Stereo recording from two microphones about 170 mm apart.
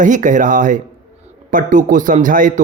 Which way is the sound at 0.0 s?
50° right (ahead or behind).